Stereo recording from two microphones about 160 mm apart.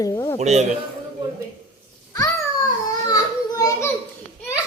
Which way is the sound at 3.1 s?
25° left (ahead or behind).